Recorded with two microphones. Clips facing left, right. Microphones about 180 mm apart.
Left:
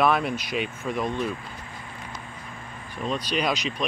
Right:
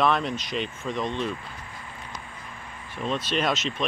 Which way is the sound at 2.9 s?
Centre (ahead or behind).